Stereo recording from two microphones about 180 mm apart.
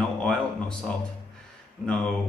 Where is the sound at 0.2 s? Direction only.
5° left (ahead or behind).